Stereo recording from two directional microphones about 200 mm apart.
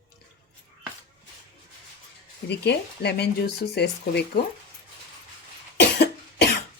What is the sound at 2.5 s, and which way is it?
Speech, 55° left (ahead or behind).